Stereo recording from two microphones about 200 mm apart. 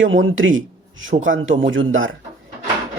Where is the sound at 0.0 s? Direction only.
70° right (ahead or behind).